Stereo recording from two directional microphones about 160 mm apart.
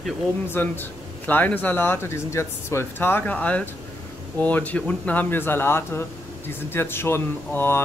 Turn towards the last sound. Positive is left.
turn(degrees=15)  # may be behind; listen again after turning